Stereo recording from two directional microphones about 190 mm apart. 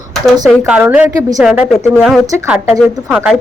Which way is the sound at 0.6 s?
10° right (ahead or behind).